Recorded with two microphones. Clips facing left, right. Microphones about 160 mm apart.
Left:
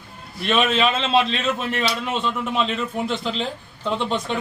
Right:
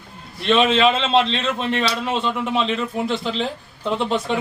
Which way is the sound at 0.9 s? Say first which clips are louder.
Right 2 dB; 5° left (ahead or behind).